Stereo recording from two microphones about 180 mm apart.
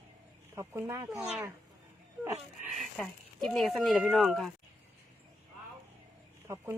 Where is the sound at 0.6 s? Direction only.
15° right (ahead or behind).